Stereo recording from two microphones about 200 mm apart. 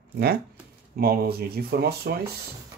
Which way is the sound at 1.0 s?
50° right (ahead or behind).